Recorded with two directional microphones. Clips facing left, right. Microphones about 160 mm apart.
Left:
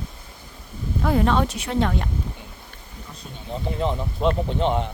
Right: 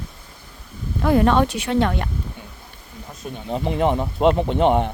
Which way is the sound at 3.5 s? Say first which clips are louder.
Right 5 dB; 70° right (ahead or behind).